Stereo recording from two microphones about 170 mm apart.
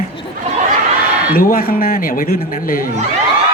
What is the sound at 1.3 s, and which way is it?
A man's voice, 60° left (ahead or behind).